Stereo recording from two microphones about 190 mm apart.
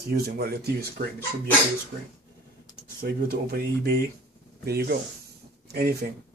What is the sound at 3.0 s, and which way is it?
Speech, 55° right (ahead or behind).